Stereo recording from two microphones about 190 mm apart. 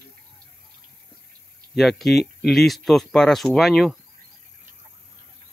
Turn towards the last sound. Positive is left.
turn(degrees=0)  # may be behind; listen again after turning